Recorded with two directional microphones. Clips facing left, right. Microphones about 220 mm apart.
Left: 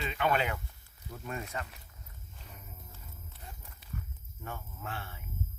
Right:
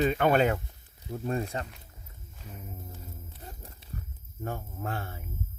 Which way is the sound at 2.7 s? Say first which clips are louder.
Right 9 dB; 35° right (ahead or behind).